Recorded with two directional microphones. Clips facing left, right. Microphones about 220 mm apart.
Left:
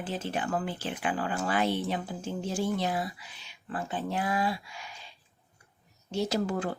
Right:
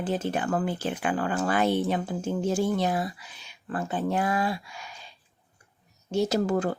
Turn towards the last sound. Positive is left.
turn(degrees=-45)  # may be behind; listen again after turning